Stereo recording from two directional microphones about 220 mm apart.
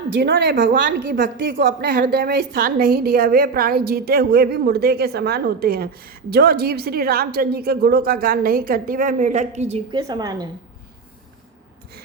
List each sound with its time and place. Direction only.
0.2 s a woman's voice: 50° right (ahead or behind); by 10.0 s 30° right (ahead or behind)
10.0 s a woman's voice: 15° right (ahead or behind)